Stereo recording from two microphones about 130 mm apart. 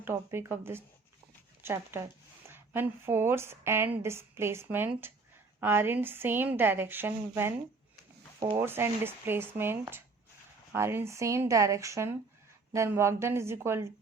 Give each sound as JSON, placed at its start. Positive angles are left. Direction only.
{"t": 0.0, "sound": "a woman's voice", "side_deg": -20}
{"t": 8.5, "sound": "a woman's voice", "side_deg": -15}
{"t": 10.8, "sound": "speech", "side_deg": -20}